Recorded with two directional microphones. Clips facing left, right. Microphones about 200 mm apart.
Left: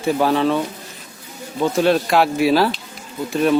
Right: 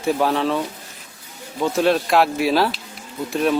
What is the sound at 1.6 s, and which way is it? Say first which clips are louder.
Speech: left 2 dB; centre (ahead or behind).